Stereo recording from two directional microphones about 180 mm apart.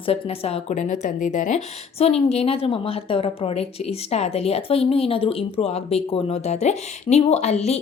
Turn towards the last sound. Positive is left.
turn(degrees=35)  # may be behind; listen again after turning